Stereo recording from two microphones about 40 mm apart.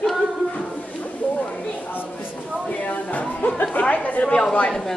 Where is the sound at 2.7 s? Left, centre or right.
Left.